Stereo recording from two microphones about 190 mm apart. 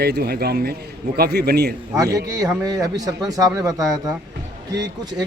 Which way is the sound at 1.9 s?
15° right (ahead or behind).